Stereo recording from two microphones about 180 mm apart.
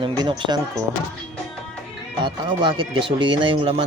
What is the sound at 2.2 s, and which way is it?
Speech, 25° right (ahead or behind).